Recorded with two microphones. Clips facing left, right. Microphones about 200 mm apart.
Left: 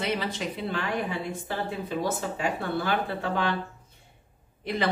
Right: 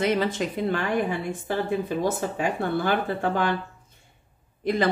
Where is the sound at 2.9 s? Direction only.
50° right (ahead or behind).